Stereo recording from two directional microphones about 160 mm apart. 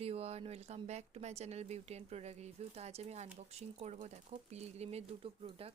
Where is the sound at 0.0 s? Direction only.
40° right (ahead or behind).